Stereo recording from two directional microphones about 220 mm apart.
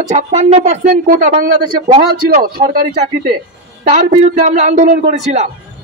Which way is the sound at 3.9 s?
30° right (ahead or behind).